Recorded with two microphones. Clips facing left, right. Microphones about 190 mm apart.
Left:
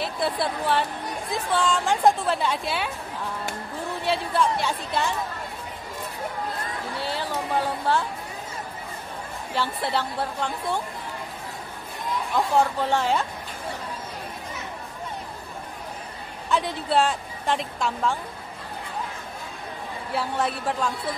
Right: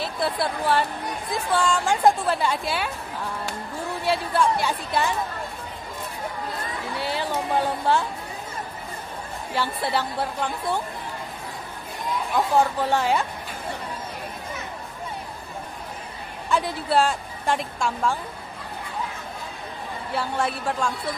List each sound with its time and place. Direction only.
0.0 s a woman's voice: centre (ahead or behind)
4.0 s a woman's voice: 5° right (ahead or behind)
7.0 s a sound: 15° right (ahead or behind)
9.6 s a woman's voice: 10° right (ahead or behind)
12.4 s a woman's voice: 5° right (ahead or behind)
16.4 s a woman's voice: 5° right (ahead or behind)
20.1 s a woman's voice: centre (ahead or behind)